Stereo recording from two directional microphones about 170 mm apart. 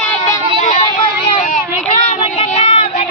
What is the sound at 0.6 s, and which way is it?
Music, 45° left (ahead or behind).